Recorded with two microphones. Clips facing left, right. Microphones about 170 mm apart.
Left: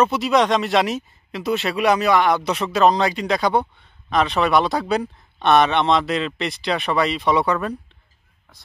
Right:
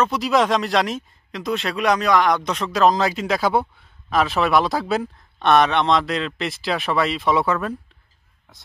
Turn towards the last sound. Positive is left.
turn(degrees=0)  # may be behind; listen again after turning